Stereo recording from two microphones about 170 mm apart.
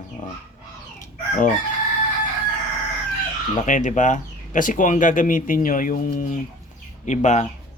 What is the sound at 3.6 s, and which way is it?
Speech, 45° left (ahead or behind).